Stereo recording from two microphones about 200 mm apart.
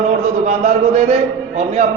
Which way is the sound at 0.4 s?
35° right (ahead or behind).